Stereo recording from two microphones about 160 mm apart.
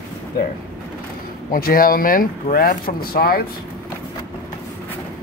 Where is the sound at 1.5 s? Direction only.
65° left (ahead or behind).